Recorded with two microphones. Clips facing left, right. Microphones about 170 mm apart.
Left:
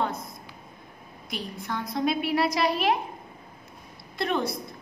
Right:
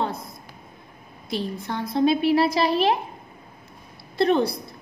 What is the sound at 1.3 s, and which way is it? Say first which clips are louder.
A woman's voice: right 5 dB; 30° right (ahead or behind).